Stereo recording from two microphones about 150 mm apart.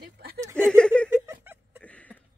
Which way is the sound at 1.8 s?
10° left (ahead or behind).